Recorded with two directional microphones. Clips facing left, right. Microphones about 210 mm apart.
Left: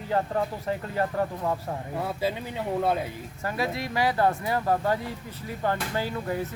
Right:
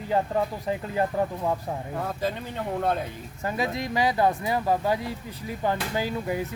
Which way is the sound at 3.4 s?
20° right (ahead or behind).